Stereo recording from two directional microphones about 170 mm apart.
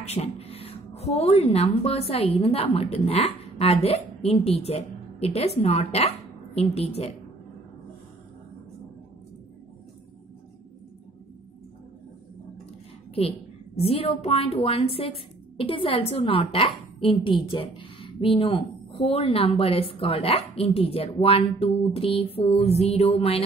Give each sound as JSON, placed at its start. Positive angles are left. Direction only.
{"t": 0.1, "sound": "a woman's voice", "side_deg": 35}
{"t": 13.2, "sound": "speech", "side_deg": 35}